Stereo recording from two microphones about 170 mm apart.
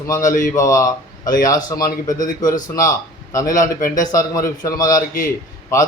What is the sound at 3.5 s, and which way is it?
Speech, 50° left (ahead or behind).